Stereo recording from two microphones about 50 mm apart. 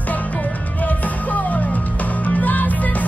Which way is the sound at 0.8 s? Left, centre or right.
Left.